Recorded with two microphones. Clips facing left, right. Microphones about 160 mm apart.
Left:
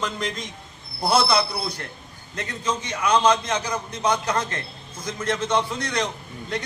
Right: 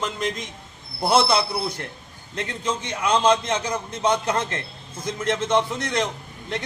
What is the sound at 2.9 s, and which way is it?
A man's voice, 25° right (ahead or behind).